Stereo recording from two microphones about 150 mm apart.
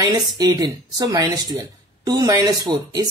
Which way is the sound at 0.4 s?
25° right (ahead or behind).